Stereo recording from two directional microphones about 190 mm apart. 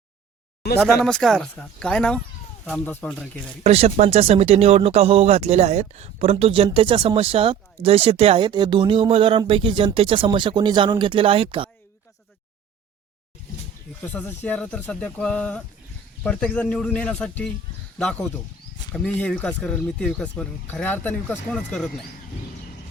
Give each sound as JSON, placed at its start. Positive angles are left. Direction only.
{"t": 0.8, "sound": "speech", "side_deg": 5}
{"t": 3.6, "sound": "speech", "side_deg": -30}
{"t": 14.0, "sound": "speech", "side_deg": 10}